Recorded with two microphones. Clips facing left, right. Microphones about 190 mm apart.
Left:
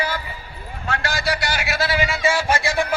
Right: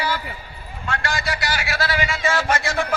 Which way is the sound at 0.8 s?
35° left (ahead or behind).